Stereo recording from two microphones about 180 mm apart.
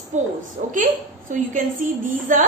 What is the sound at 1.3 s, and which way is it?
A woman's voice, 45° right (ahead or behind).